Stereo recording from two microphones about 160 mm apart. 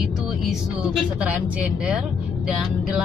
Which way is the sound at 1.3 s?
5° right (ahead or behind).